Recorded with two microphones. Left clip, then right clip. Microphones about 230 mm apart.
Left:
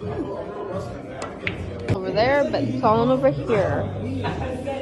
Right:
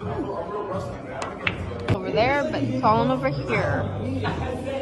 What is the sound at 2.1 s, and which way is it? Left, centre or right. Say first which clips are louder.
A woman's voice: left 3 dB; right.